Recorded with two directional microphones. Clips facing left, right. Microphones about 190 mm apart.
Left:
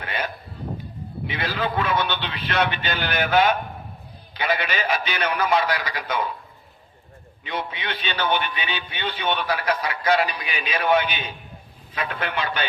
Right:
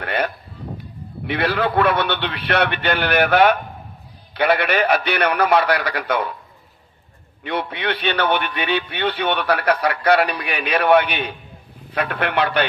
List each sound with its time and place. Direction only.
0.0 s a sound: 60° right (ahead or behind)
1.3 s a man's voice: 65° right (ahead or behind)
7.4 s a man's voice: 60° right (ahead or behind)